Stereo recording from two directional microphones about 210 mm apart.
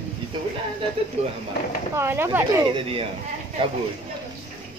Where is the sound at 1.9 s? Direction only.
10° right (ahead or behind).